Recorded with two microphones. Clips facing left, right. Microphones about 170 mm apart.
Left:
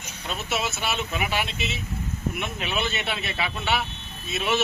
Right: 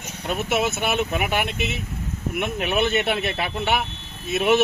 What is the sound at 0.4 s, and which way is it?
Speech, 55° right (ahead or behind).